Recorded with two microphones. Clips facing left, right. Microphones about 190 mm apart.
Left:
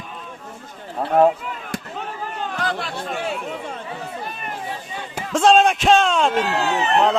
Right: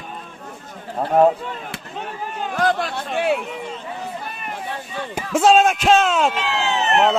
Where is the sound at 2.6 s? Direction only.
45° right (ahead or behind).